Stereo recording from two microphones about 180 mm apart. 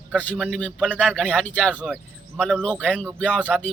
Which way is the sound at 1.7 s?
5° right (ahead or behind).